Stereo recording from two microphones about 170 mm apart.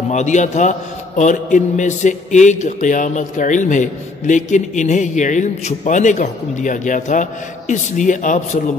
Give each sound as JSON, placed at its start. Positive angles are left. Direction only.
{"t": 0.1, "sound": "a man's voice", "side_deg": 45}